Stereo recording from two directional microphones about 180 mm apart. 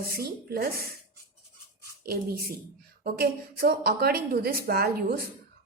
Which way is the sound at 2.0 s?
55° right (ahead or behind).